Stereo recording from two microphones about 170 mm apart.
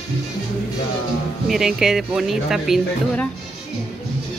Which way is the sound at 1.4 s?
Centre (ahead or behind).